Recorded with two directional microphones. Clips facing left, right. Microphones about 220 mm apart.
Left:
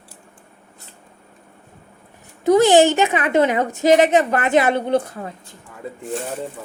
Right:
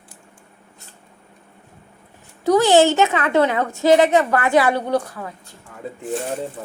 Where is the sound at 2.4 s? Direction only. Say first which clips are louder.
Left 1 dB; 20° left (ahead or behind).